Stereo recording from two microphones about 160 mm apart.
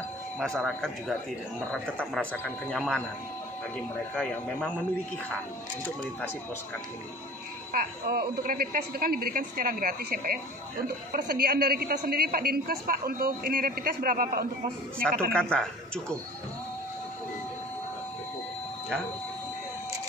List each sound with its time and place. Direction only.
0.4 s speech: 5° left (ahead or behind)
7.7 s a woman's voice: 70° right (ahead or behind)
15.3 s speech: 5° left (ahead or behind)